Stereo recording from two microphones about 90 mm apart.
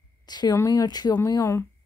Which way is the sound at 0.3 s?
50° left (ahead or behind).